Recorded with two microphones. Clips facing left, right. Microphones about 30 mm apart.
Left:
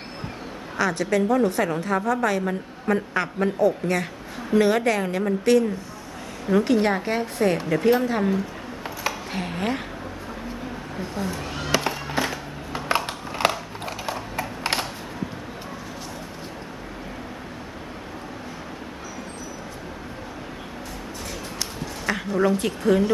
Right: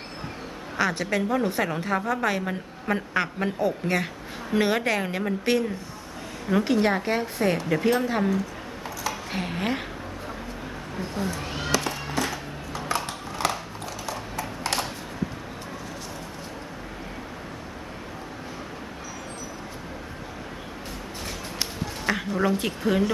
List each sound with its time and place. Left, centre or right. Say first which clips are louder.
0.8 s a woman's voice: left 3 dB; centre
9.3 s a woman's voice: right 1 dB; centre
11.3 s a sound: left 1 dB; centre
11.7 s music: left 3 dB; left
12.9 s a sound: left 5 dB; left
22.0 s speech: left 3 dB; centre